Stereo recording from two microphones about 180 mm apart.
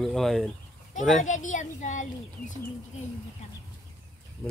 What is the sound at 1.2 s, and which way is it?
Speech, 45° left (ahead or behind).